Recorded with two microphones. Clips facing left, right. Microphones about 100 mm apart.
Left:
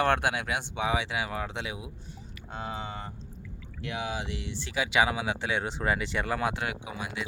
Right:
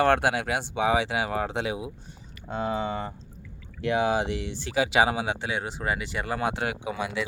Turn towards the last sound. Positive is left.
turn(degrees=-80)